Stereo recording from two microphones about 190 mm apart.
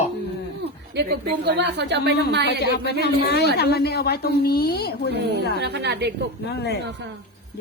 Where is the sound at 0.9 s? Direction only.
60° right (ahead or behind).